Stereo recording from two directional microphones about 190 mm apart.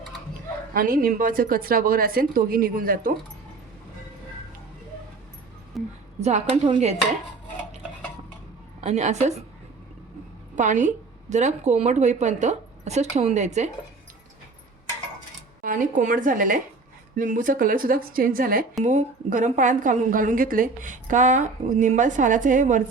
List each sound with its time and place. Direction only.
0.7 s a woman's voice: 50° right (ahead or behind)
5.7 s a sound: centre (ahead or behind)
6.1 s a woman's voice: 35° right (ahead or behind)
8.8 s a woman's voice: 35° right (ahead or behind)
10.5 s a woman's voice: 40° right (ahead or behind)
15.6 s a woman's voice: 45° right (ahead or behind)
18.8 s a woman's voice: 40° right (ahead or behind)